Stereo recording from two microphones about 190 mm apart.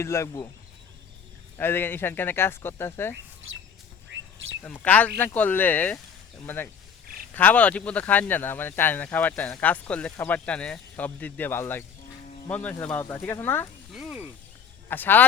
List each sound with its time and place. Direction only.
0.0 s speech: 15° left (ahead or behind)
1.5 s speech: 10° left (ahead or behind)
4.1 s bird: 75° right (ahead or behind)
4.6 s speech: 10° left (ahead or behind)
13.9 s a sound: 5° right (ahead or behind)
14.8 s speech: 10° left (ahead or behind)